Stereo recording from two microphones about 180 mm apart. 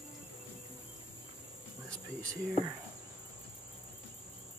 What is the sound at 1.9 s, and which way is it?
Cricket, 5° left (ahead or behind).